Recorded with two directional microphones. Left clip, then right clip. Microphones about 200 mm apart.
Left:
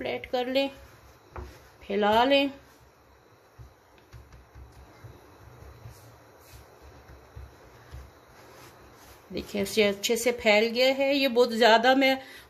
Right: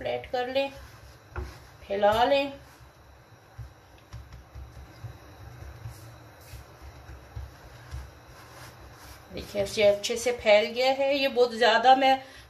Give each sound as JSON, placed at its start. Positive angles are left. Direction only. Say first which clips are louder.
{"t": 0.0, "sound": "speech", "louder": "even", "side_deg": 55}
{"t": 1.9, "sound": "a woman's voice", "louder": "even", "side_deg": 60}
{"t": 9.3, "sound": "a woman's voice", "louder": "even", "side_deg": 55}